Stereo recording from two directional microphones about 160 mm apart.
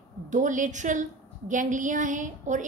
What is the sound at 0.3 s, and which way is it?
A woman's voice, 50° right (ahead or behind).